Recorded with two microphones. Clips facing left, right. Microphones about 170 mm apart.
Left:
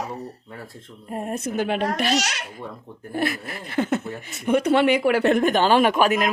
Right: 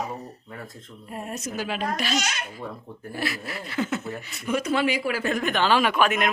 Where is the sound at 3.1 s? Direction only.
50° left (ahead or behind).